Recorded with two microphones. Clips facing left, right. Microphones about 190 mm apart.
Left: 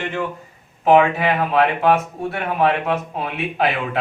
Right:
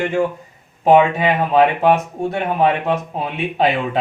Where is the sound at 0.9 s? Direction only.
20° right (ahead or behind).